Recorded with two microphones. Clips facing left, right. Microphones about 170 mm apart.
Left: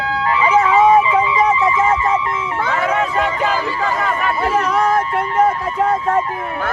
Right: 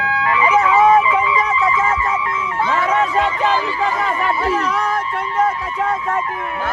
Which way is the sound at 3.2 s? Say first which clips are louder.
Right 1 dB; 25° right (ahead or behind).